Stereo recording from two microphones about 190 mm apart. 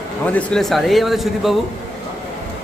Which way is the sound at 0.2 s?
10° left (ahead or behind).